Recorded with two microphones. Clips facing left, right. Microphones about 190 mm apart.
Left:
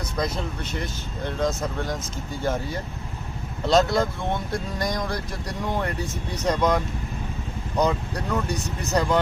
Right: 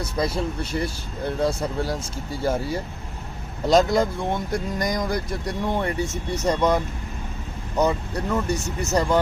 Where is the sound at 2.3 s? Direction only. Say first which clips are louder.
Right 3 dB; 10° right (ahead or behind).